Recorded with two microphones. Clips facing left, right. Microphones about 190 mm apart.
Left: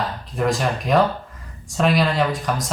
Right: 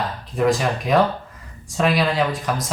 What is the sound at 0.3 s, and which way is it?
Speech, centre (ahead or behind).